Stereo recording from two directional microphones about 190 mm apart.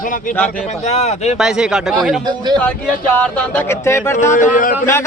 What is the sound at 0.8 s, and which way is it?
Speech, 35° left (ahead or behind).